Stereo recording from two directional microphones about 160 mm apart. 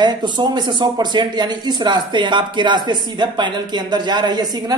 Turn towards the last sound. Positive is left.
turn(degrees=-25)  # may be behind; listen again after turning